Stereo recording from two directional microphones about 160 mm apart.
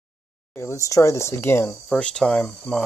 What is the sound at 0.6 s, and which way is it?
Speech, 20° left (ahead or behind).